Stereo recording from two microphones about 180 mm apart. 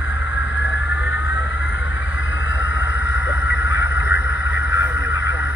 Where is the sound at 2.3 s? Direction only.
90° left.